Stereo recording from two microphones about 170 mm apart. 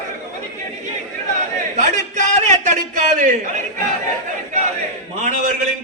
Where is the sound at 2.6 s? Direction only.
45° right (ahead or behind).